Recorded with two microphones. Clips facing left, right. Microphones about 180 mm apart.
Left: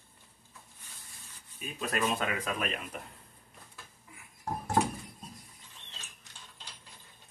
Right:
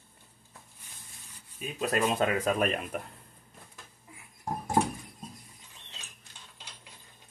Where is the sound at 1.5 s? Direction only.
35° right (ahead or behind).